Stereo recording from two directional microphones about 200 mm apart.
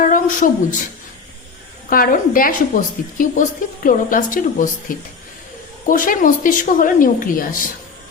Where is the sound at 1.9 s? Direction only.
45° left (ahead or behind).